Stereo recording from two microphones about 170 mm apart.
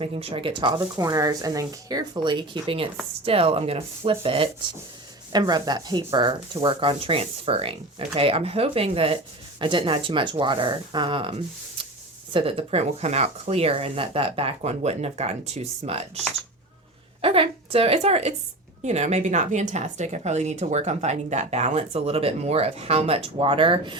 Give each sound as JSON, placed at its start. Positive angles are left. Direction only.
{"t": 0.0, "sound": "a woman's voice", "side_deg": -35}